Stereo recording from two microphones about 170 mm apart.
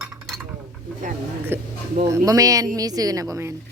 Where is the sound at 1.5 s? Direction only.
15° right (ahead or behind).